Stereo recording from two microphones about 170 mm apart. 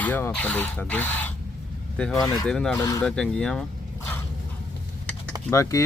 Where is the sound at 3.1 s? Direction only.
5° left (ahead or behind).